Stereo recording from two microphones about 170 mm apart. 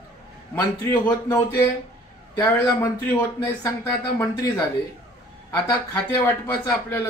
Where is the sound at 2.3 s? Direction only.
15° left (ahead or behind).